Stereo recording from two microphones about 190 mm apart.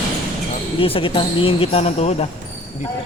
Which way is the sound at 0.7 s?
30° left (ahead or behind).